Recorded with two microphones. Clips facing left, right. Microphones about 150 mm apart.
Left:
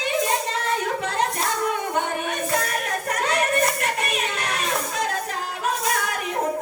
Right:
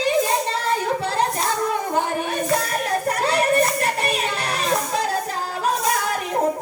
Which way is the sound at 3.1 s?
30° right (ahead or behind).